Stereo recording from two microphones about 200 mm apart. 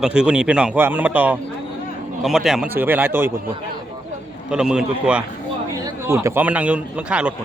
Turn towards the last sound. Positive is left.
turn(degrees=-5)  # may be behind; listen again after turning